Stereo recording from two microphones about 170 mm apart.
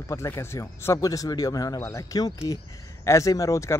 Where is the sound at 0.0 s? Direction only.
15° left (ahead or behind).